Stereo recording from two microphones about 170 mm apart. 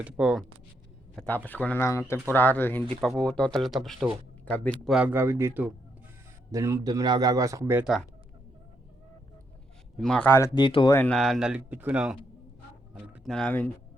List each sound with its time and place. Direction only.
0.0 s speech: 5° right (ahead or behind)
1.1 s speech: 10° left (ahead or behind)
4.9 s speech: 10° right (ahead or behind)
10.0 s speech: 5° left (ahead or behind)
10.5 s speech: 30° left (ahead or behind)
11.1 s speech: centre (ahead or behind)